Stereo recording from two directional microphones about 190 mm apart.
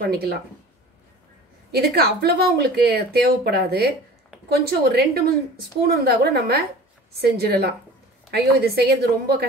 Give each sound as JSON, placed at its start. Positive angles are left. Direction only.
{"t": 0.0, "sound": "speech", "side_deg": -55}
{"t": 1.7, "sound": "a woman's voice", "side_deg": -55}